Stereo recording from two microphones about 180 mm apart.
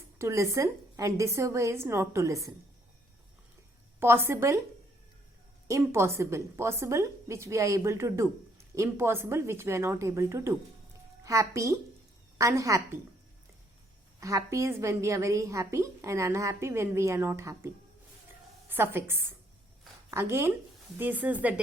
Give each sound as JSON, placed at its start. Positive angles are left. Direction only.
{"t": 0.2, "sound": "a woman's voice", "side_deg": -15}
{"t": 4.0, "sound": "a woman's voice", "side_deg": -15}
{"t": 5.6, "sound": "a woman's voice", "side_deg": -15}
{"t": 14.2, "sound": "a woman's voice", "side_deg": -15}
{"t": 18.7, "sound": "a woman's voice", "side_deg": -10}